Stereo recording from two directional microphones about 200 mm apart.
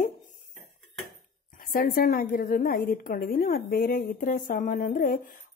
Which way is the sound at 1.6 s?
45° left (ahead or behind).